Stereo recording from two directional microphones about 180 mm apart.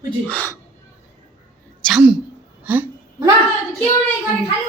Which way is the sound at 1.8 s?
5° right (ahead or behind).